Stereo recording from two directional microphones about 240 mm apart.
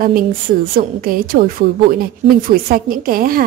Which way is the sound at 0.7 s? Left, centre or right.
Right.